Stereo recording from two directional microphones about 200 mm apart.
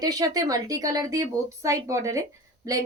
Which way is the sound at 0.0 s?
20° right (ahead or behind).